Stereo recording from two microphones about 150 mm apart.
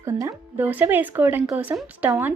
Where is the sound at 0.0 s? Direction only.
20° right (ahead or behind).